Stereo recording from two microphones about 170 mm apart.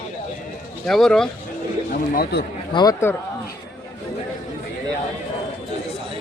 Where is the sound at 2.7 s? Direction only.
25° left (ahead or behind).